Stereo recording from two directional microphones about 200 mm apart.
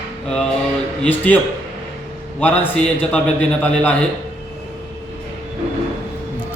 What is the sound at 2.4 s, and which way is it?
A man's voice, 10° left (ahead or behind).